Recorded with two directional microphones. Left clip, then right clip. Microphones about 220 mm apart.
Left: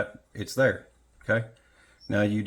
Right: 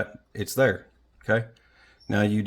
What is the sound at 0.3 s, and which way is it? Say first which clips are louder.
Speech: right 2 dB; 45° right (ahead or behind).